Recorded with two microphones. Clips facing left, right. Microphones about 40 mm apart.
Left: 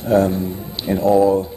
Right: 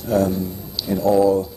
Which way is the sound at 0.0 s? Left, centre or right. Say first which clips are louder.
Left 3 dB; left.